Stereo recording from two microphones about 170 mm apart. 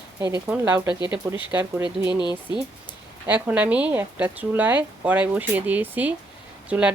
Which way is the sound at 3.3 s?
10° right (ahead or behind).